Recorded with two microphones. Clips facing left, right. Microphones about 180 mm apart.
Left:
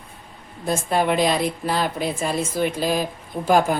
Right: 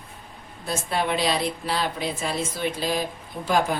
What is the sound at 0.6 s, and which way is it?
A woman's voice, 45° left (ahead or behind).